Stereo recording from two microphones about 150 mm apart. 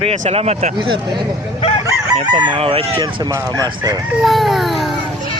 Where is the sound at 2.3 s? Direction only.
30° right (ahead or behind).